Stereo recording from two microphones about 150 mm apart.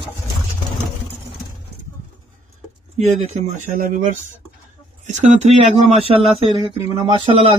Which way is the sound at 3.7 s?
65° right (ahead or behind).